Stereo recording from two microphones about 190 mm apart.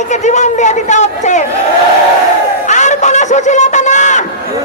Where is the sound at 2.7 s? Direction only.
40° left (ahead or behind).